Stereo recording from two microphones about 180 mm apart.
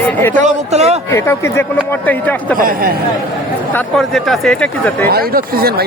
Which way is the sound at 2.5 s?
55° right (ahead or behind).